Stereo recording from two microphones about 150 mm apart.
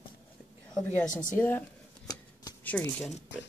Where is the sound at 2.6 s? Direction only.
10° left (ahead or behind).